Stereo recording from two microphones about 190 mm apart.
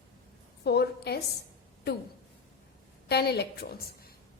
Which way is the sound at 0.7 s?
60° left (ahead or behind).